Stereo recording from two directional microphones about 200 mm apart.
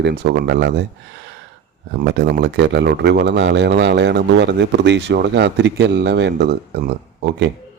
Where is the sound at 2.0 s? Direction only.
60° right (ahead or behind).